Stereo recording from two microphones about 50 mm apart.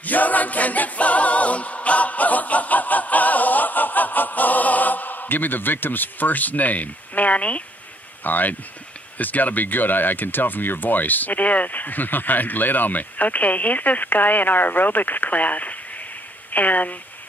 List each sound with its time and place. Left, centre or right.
0.0 s a capella: left
8.2 s speech: left